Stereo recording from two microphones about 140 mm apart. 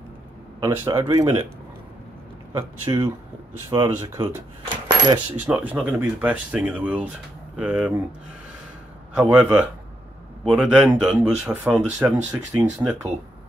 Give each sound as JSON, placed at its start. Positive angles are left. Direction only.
{"t": 0.6, "sound": "speech", "side_deg": -30}
{"t": 2.9, "sound": "speech", "side_deg": -30}
{"t": 4.8, "sound": "coin", "side_deg": -30}
{"t": 5.5, "sound": "speech", "side_deg": -10}
{"t": 9.1, "sound": "speech", "side_deg": -5}